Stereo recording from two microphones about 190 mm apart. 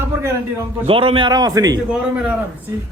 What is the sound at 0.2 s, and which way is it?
Speech, 10° right (ahead or behind).